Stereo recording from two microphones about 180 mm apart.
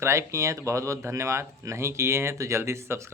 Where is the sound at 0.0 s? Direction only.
15° right (ahead or behind).